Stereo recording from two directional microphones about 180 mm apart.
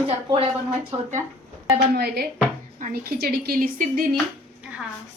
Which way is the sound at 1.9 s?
65° right (ahead or behind).